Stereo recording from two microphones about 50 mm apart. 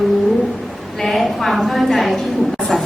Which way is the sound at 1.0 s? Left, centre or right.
Centre.